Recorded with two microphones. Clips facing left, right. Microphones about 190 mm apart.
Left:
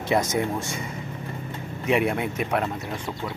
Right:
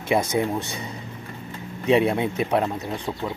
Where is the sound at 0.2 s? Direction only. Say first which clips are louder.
Right 2 dB; 30° right (ahead or behind).